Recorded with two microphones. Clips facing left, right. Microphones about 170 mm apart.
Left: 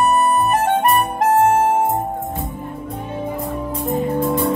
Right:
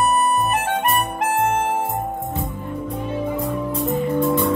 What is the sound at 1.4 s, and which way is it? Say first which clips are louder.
Music: left 5 dB; 40° left (ahead or behind).